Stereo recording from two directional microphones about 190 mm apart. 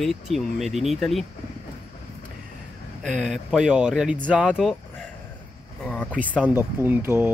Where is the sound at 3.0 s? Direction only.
Centre (ahead or behind).